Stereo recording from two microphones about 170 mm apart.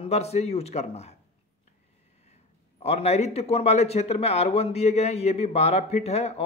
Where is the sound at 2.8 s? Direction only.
40° left (ahead or behind).